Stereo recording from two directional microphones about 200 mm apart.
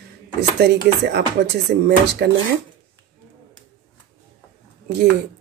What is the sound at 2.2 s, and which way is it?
Speech, 55° right (ahead or behind).